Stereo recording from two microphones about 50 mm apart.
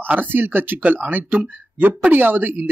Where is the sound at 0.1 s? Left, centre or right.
Right.